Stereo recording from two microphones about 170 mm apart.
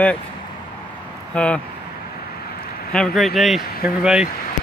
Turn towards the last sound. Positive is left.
turn(degrees=-5)  # may be behind; listen again after turning